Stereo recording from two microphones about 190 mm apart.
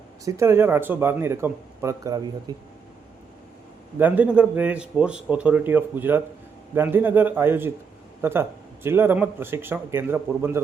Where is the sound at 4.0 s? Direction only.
10° right (ahead or behind).